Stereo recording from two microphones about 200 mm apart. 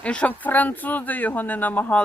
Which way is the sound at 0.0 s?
5° left (ahead or behind).